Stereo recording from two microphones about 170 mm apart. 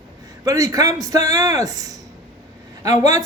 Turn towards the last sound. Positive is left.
turn(degrees=-20)  # may be behind; listen again after turning